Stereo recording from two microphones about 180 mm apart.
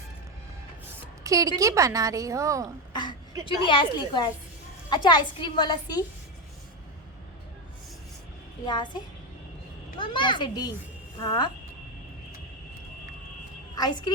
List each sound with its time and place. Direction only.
1.2 s a woman's voice: 20° right (ahead or behind)
2.9 s a sound: 25° left (ahead or behind)
3.4 s a woman's voice: 25° left (ahead or behind)
8.6 s a woman's voice: 25° left (ahead or behind)
10.0 s a woman's voice: 25° left (ahead or behind)
13.7 s a woman's voice: 20° left (ahead or behind)